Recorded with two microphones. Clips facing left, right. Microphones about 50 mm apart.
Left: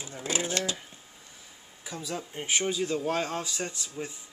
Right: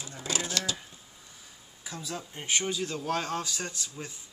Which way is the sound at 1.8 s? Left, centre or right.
Centre.